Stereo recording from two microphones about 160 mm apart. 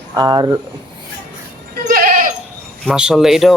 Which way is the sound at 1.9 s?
60° right (ahead or behind).